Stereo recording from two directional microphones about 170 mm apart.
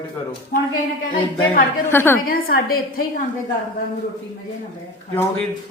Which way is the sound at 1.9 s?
10° left (ahead or behind).